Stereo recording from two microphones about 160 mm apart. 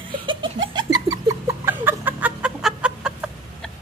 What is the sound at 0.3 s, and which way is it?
Laughter, 30° right (ahead or behind).